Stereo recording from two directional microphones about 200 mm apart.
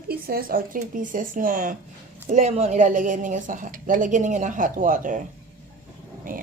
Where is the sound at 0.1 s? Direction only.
50° right (ahead or behind).